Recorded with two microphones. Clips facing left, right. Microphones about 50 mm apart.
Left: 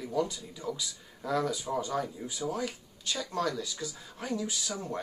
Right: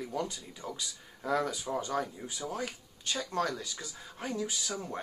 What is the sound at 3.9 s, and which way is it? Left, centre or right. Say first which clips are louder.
Speech: right 1 dB; right.